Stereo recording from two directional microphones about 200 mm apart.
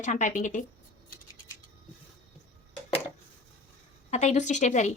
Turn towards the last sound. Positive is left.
turn(degrees=35)  # may be behind; listen again after turning